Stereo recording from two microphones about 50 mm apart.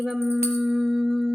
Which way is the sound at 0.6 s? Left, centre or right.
Centre.